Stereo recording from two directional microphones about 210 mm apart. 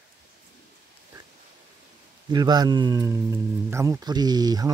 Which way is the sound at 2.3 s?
20° right (ahead or behind).